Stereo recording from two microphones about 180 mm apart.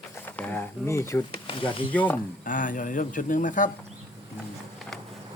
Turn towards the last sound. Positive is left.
turn(degrees=0)  # may be behind; listen again after turning